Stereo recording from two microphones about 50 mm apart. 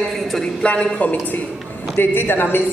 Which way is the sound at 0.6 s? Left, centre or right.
Left.